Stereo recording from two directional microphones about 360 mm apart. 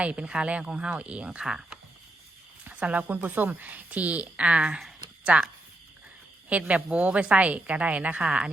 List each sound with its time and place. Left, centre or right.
0.0 s a woman's voice: centre
6.5 s a woman's voice: centre